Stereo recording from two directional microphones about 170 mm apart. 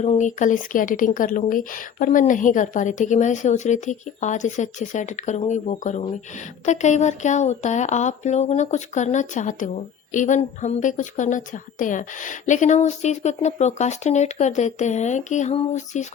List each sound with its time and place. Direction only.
0.0 s speech: 45° left (ahead or behind)